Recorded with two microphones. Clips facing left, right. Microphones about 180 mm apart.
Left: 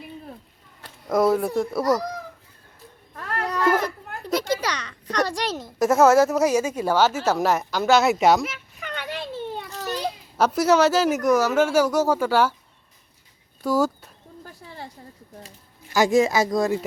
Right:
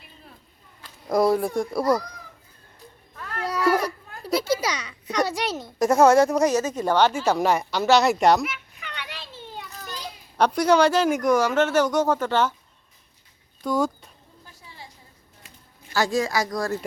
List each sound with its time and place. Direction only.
1.1 s speech: centre (ahead or behind)
3.5 s baby cry: 5° right (ahead or behind)
4.3 s a child's voice: 10° right (ahead or behind)
8.8 s a sound: 45° left (ahead or behind)
9.7 s children playing: 70° left (ahead or behind)
10.3 s speech: 5° left (ahead or behind)
13.6 s speech: 5° left (ahead or behind)
14.4 s a sound: 55° left (ahead or behind)
15.9 s speech: 20° left (ahead or behind)